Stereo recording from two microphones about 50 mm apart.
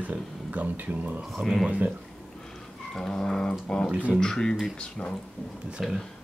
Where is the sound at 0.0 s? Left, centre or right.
Right.